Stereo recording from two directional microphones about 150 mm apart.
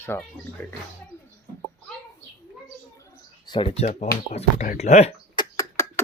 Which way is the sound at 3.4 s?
30° left (ahead or behind).